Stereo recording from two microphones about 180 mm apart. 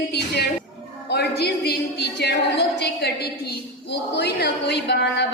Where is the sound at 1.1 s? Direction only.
65° left (ahead or behind).